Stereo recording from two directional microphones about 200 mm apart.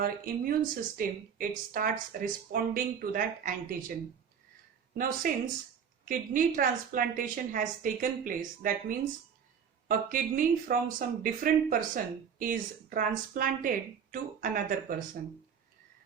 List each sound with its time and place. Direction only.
0.0 s speech: 45° right (ahead or behind)
4.9 s speech: 45° right (ahead or behind)
10.1 s speech: 45° right (ahead or behind)